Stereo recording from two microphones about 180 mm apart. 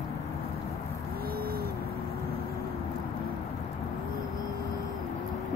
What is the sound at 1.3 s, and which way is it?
Vehicle, 55° right (ahead or behind).